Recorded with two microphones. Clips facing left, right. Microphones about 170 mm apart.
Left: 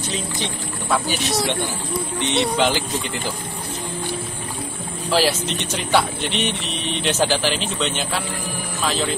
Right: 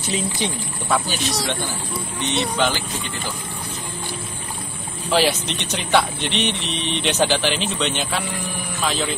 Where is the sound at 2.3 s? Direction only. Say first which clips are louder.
Left 2 dB; 30° left (ahead or behind).